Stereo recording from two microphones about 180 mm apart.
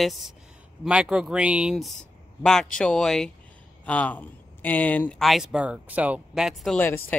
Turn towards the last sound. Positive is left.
turn(degrees=10)  # may be behind; listen again after turning